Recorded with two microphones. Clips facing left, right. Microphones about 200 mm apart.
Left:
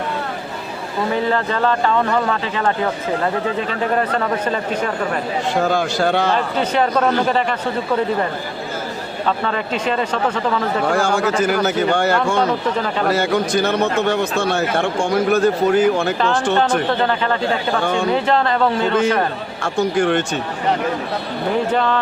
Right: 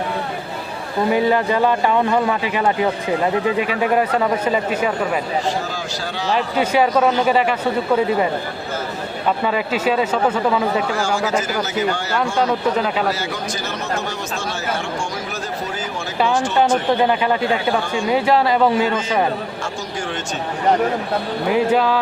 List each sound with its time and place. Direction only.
1.1 s a man's voice: 15° right (ahead or behind)
5.6 s speech: 60° left (ahead or behind)
6.3 s a man's voice: 10° right (ahead or behind)
9.4 s a man's voice: 5° right (ahead or behind)
11.4 s speech: 55° left (ahead or behind)
16.6 s a man's voice: 10° right (ahead or behind)
19.6 s speech: 60° left (ahead or behind)
21.5 s a man's voice: 5° right (ahead or behind)